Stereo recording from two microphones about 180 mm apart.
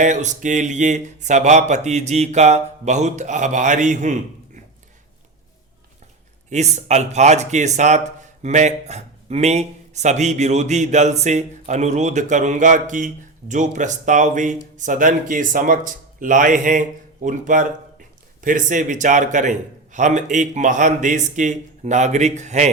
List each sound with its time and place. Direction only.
0.0 s speech: 40° right (ahead or behind)
6.5 s a man's voice: 40° right (ahead or behind)